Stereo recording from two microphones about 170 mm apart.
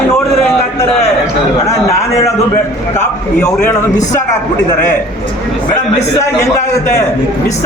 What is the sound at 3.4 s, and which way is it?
Speech, 10° left (ahead or behind).